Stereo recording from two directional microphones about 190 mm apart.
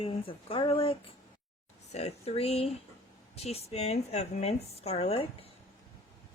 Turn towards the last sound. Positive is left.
turn(degrees=30)  # may be behind; listen again after turning